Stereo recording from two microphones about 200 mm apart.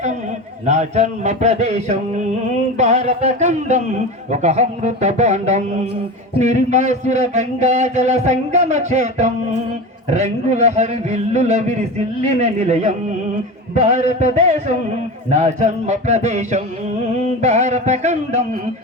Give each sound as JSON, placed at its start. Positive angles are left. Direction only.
{"t": 0.6, "sound": "a man's voice", "side_deg": -35}